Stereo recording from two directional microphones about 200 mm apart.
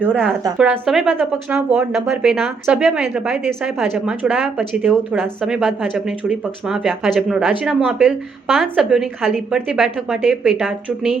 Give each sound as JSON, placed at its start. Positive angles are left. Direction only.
{"t": 0.0, "sound": "a woman's voice", "side_deg": -10}